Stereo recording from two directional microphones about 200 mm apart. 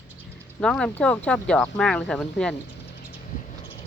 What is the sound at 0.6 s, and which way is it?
Speech, 5° left (ahead or behind).